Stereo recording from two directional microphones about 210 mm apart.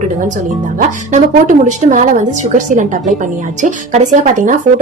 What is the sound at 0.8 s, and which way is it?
Speech, 35° right (ahead or behind).